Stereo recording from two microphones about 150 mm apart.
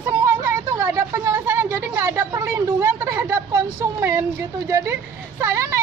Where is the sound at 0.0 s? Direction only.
15° right (ahead or behind).